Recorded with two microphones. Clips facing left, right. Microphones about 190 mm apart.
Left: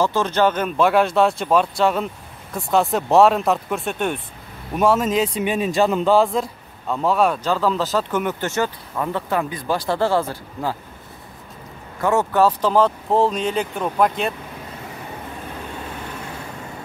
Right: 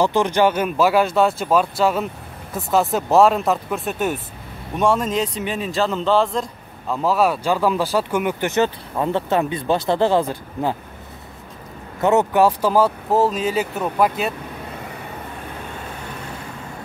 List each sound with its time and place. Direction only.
0.0 s speech: 15° right (ahead or behind); by 5.4 s 5° left (ahead or behind)
5.4 s a man's voice: 15° left (ahead or behind); by 10.8 s 20° right (ahead or behind)
12.0 s speech: 20° right (ahead or behind); by 14.3 s 5° right (ahead or behind)